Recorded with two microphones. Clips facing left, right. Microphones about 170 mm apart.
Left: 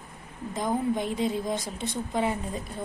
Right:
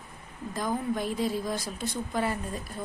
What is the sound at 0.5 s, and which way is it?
A woman's voice, 20° left (ahead or behind).